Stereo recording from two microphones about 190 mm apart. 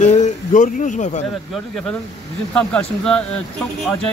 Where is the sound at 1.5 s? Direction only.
5° left (ahead or behind).